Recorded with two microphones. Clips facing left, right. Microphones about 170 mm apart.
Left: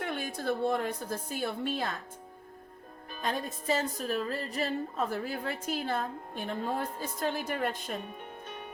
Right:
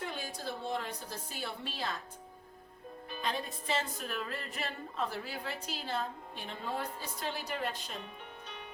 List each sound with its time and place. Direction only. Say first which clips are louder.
0.0 s speech: left 6 dB; 60° left (ahead or behind)
3.1 s speech: left 3 dB; 45° left (ahead or behind)